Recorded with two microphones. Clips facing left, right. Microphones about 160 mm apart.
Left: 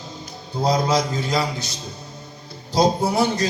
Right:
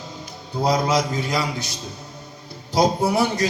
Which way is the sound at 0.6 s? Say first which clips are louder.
Even; 25° left (ahead or behind).